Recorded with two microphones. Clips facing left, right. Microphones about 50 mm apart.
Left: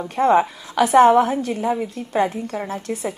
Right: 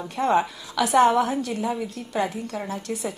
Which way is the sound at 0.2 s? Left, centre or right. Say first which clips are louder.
Left 5 dB; left.